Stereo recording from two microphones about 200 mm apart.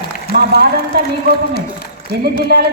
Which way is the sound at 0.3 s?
50° right (ahead or behind).